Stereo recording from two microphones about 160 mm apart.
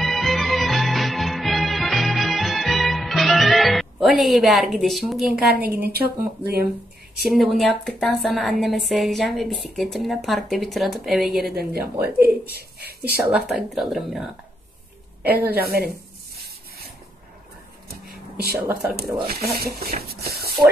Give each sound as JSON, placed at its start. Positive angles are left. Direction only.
{"t": 0.0, "sound": "music", "side_deg": 0}
{"t": 5.5, "sound": "speech", "side_deg": -75}
{"t": 7.2, "sound": "a woman's voice", "side_deg": 0}
{"t": 11.5, "sound": "speech", "side_deg": -75}
{"t": 13.3, "sound": "a woman's voice", "side_deg": 0}
{"t": 17.8, "sound": "a sound", "side_deg": -75}
{"t": 18.9, "sound": "speech", "side_deg": -75}